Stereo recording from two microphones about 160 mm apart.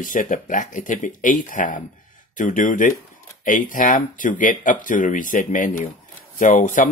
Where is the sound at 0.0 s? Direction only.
55° left (ahead or behind).